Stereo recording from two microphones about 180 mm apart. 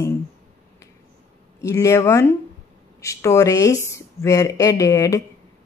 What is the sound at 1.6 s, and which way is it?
Speech, 15° left (ahead or behind).